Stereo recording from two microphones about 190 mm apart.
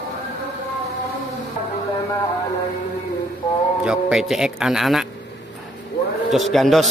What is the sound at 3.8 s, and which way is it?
A man's voice, 5° right (ahead or behind).